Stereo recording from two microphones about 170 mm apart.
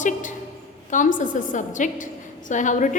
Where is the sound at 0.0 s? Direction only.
50° left (ahead or behind).